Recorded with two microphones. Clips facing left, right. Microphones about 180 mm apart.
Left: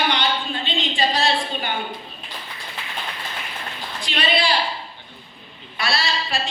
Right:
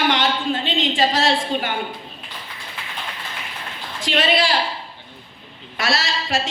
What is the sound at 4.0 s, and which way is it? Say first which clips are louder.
Speech: right 4 dB; 90° right.